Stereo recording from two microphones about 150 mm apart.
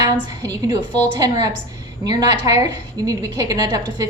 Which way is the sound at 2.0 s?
25° right (ahead or behind).